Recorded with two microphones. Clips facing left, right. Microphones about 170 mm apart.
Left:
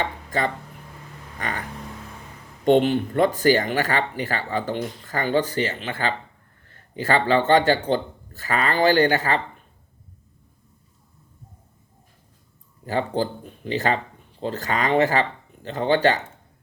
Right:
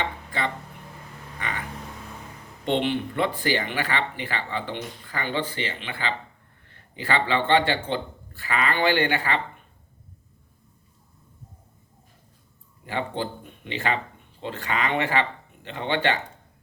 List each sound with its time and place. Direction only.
0.0 s speech: 40° left (ahead or behind)
1.4 s cat: 45° left (ahead or behind)
2.6 s a man's voice: 40° left (ahead or behind)
12.8 s speech: 40° left (ahead or behind)